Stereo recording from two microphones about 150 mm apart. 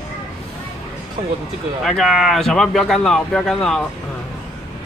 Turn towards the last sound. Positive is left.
turn(degrees=5)  # may be behind; listen again after turning